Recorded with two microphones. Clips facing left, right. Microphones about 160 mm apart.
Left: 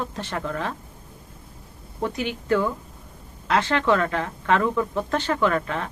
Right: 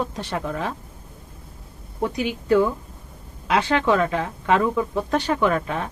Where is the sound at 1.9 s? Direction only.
15° right (ahead or behind).